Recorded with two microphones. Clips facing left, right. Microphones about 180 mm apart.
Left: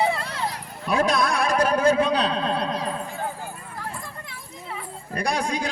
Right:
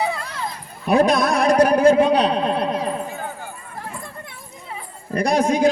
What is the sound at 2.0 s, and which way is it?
Speech, 20° right (ahead or behind).